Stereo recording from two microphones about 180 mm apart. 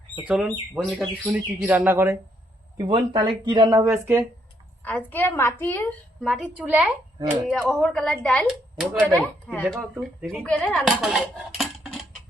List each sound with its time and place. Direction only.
0.2 s speech: 5° right (ahead or behind)
2.7 s speech: 25° right (ahead or behind)
3.9 s speech: 10° right (ahead or behind)
4.8 s a woman's voice: 10° left (ahead or behind)
6.2 s speech: centre (ahead or behind)